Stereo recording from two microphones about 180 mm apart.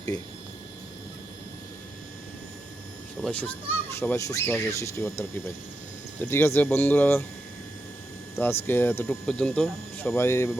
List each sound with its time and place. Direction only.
0.1 s speech: 20° left (ahead or behind)
3.2 s speech: 5° left (ahead or behind)
4.0 s speech: 15° left (ahead or behind)
8.4 s speech: 10° left (ahead or behind)